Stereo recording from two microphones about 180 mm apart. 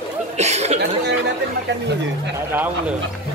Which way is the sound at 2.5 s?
10° right (ahead or behind).